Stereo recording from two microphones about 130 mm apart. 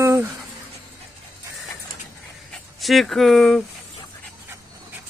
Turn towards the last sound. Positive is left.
turn(degrees=0)  # may be behind; listen again after turning